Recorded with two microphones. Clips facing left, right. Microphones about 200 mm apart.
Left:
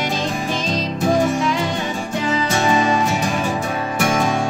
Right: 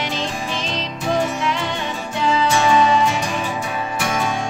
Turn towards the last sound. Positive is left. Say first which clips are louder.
# left 4 dB
turn(degrees=45)  # may be behind; listen again after turning